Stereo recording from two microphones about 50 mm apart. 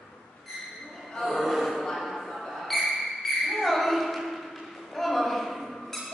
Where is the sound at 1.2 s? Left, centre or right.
Centre.